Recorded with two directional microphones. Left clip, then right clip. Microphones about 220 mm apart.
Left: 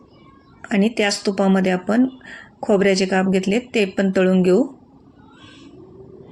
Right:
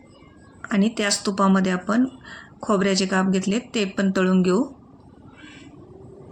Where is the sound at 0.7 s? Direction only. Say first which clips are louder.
Left 4 dB; 5° left (ahead or behind).